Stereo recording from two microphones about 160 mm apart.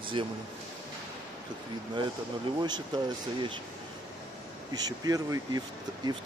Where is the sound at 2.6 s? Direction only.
25° right (ahead or behind).